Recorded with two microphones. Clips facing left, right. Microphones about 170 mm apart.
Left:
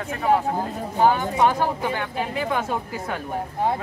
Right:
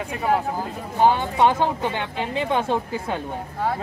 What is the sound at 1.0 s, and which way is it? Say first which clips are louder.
Speech: right 1 dB; 20° right (ahead or behind).